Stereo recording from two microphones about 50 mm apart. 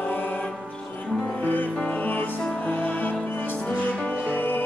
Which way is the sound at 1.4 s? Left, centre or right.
Left.